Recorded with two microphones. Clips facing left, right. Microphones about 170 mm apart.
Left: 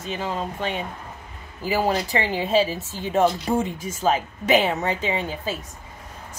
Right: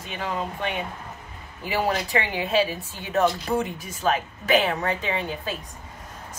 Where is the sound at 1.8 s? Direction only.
30° left (ahead or behind).